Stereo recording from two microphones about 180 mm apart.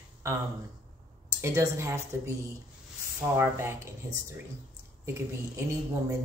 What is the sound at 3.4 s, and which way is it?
Speech, 15° right (ahead or behind).